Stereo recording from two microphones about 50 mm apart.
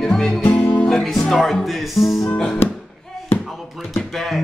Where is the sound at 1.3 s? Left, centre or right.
Centre.